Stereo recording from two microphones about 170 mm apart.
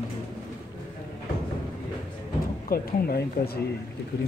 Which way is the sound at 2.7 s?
65° left (ahead or behind).